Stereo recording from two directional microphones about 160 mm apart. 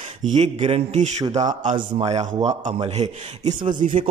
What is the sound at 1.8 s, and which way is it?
Speech, 35° right (ahead or behind).